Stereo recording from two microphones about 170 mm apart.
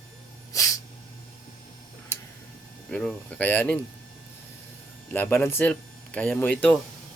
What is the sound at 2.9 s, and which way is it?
Speech, 5° left (ahead or behind).